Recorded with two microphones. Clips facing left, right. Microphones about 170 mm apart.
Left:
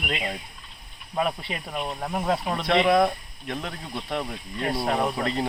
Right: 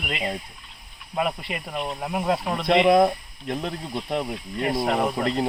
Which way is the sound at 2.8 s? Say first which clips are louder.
Right 4 dB; 25° right (ahead or behind).